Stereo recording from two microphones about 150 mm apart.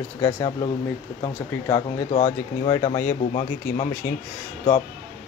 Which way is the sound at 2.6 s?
30° left (ahead or behind).